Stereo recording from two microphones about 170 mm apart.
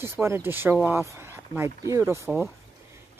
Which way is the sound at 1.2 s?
15° right (ahead or behind).